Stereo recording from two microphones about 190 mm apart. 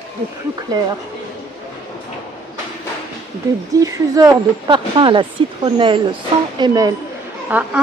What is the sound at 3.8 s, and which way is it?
Speech, 20° right (ahead or behind).